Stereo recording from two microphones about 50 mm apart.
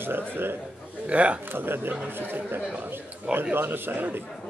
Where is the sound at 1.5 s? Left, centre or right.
Right.